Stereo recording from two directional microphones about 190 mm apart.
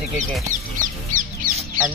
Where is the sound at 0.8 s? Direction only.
45° right (ahead or behind).